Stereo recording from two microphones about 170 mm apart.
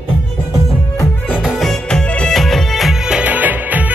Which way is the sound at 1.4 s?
Centre (ahead or behind).